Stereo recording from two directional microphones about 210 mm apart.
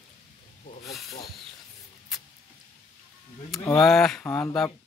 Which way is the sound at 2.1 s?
Centre (ahead or behind).